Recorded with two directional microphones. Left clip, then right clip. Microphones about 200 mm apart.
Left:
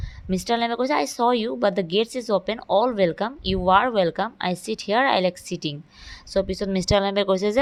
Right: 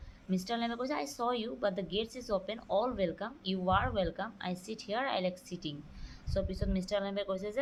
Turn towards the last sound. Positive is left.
turn(degrees=50)  # may be behind; listen again after turning